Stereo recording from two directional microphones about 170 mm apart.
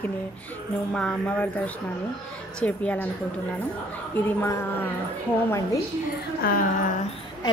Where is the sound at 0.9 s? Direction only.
5° left (ahead or behind).